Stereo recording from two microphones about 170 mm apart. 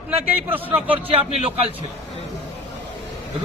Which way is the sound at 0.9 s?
35° right (ahead or behind).